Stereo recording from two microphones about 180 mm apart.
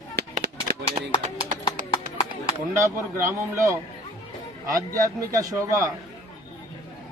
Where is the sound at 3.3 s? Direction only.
15° right (ahead or behind).